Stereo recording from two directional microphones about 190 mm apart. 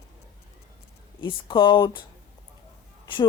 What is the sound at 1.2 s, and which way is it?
Speech, 25° left (ahead or behind).